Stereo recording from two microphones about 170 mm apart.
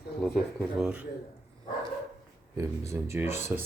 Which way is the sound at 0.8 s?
5° right (ahead or behind).